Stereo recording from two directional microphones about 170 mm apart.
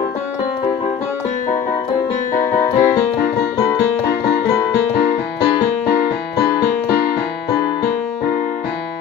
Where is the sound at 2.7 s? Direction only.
15° left (ahead or behind).